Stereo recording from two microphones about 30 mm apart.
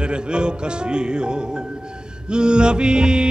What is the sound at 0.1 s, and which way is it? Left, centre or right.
Music, right.